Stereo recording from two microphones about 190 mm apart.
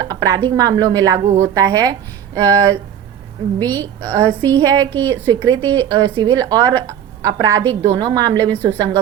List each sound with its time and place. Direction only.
0.0 s a woman's voice: 20° right (ahead or behind)
3.8 s a woman's voice: 15° right (ahead or behind)